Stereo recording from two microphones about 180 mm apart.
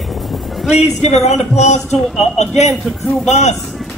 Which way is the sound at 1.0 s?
40° left (ahead or behind).